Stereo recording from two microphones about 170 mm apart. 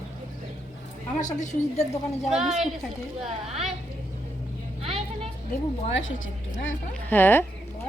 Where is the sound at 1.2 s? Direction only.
45° left (ahead or behind).